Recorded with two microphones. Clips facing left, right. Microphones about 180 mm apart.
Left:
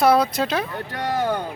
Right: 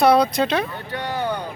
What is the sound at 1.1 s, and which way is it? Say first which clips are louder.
Speech: left 3 dB; 45° left (ahead or behind).